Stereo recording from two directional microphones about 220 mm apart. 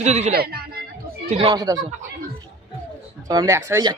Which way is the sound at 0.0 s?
30° right (ahead or behind).